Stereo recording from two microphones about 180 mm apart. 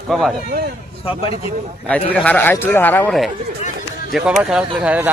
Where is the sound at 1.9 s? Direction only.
5° left (ahead or behind).